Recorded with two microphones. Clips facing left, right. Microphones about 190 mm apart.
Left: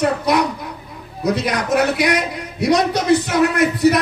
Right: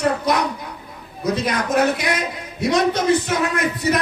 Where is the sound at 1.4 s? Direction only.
65° left (ahead or behind).